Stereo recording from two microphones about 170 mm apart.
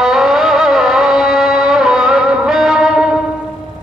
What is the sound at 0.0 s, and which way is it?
Music, centre (ahead or behind).